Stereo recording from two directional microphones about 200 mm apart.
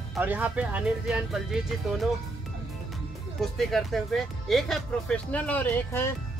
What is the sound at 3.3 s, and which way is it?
Speech, centre (ahead or behind).